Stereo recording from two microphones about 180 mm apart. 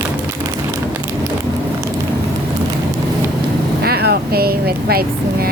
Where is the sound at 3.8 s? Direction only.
60° right (ahead or behind).